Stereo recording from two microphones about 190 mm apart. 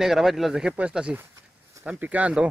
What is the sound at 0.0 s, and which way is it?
A man's voice, centre (ahead or behind).